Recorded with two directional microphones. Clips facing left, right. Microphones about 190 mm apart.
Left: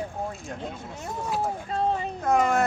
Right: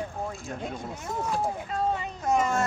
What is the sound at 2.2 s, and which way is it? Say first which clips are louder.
Speech: left 3 dB; 60° left (ahead or behind).